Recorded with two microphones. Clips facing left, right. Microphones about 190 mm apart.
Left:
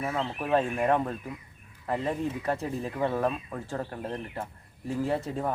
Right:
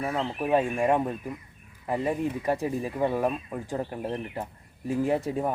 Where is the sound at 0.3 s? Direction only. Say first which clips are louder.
Right 2 dB; 15° right (ahead or behind).